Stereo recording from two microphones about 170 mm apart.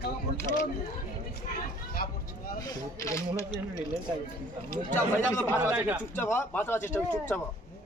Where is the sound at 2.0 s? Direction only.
60° left (ahead or behind).